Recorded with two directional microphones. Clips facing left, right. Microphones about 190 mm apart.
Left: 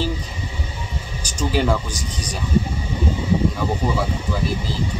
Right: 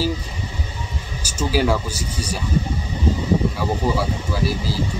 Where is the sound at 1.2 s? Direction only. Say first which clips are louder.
Right 1 dB; 5° right (ahead or behind).